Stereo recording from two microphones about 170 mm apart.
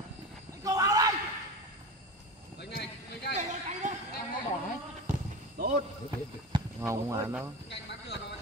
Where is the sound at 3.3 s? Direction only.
45° right (ahead or behind).